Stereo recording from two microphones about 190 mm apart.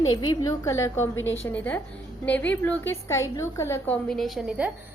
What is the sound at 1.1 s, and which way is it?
Speech, 90° left.